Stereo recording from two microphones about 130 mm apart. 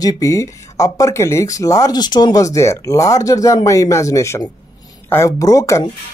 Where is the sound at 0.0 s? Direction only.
30° left (ahead or behind).